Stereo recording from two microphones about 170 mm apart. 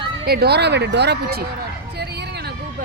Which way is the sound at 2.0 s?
75° right (ahead or behind).